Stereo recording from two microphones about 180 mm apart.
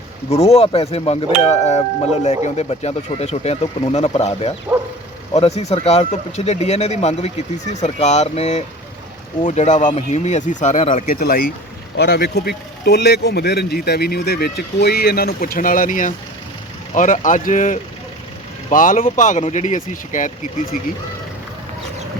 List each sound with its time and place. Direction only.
0.3 s speech: 35° left (ahead or behind); by 11.3 s 50° left (ahead or behind)
11.9 s speech: 70° left (ahead or behind); by 20.7 s 45° left (ahead or behind)